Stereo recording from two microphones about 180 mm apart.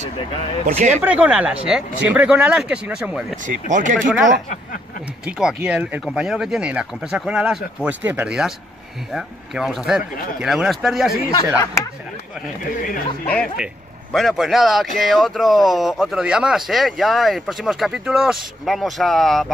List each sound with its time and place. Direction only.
0.7 s speech: 40° right (ahead or behind)
1.0 s speech: 5° right (ahead or behind)
3.4 s speech: 45° right (ahead or behind)
4.1 s speech: centre (ahead or behind)
11.3 s speech: 20° left (ahead or behind)
14.1 s speech: centre (ahead or behind)